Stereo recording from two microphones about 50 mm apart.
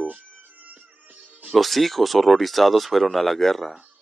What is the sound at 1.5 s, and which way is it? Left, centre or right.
Speech, centre.